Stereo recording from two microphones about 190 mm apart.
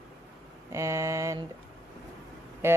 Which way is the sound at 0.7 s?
15° right (ahead or behind).